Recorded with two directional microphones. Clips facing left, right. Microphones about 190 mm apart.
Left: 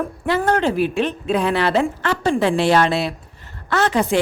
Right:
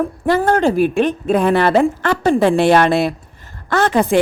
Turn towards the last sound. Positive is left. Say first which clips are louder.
# right 3 dB
turn(degrees=-50)  # may be behind; listen again after turning